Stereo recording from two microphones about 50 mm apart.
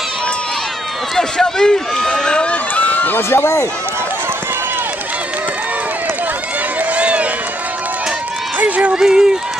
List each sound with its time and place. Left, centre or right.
1.1 s run: centre
2.7 s run: left
3.2 s speech: left
6.8 s run: right
8.5 s a sound: right
9.0 s speech: centre